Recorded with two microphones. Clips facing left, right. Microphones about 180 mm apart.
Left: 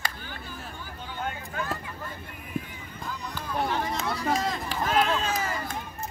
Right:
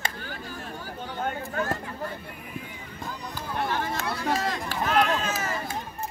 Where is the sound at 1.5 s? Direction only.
45° right (ahead or behind).